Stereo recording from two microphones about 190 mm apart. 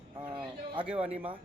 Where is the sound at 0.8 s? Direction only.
5° right (ahead or behind).